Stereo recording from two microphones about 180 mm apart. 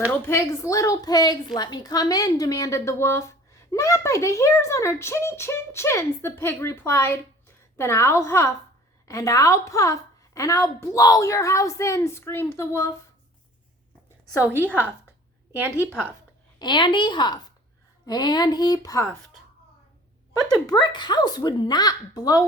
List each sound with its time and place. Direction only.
0.1 s a woman's voice: 15° left (ahead or behind)
14.5 s a woman's voice: 10° right (ahead or behind)
15.7 s a woman's voice: 15° left (ahead or behind)
16.6 s a woman's voice: 25° left (ahead or behind)
20.7 s a woman's voice: 25° left (ahead or behind)